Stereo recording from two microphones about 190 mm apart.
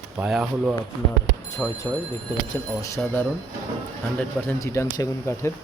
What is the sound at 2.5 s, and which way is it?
Speech, 15° left (ahead or behind).